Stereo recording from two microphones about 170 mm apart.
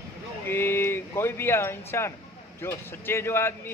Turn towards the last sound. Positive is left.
turn(degrees=15)  # may be behind; listen again after turning